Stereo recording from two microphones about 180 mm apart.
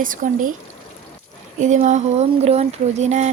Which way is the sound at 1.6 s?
40° right (ahead or behind).